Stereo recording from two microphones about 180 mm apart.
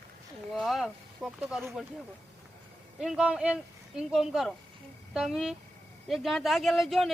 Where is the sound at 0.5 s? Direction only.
Centre (ahead or behind).